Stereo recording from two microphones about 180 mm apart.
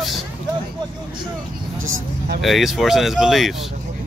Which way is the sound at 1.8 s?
90° right.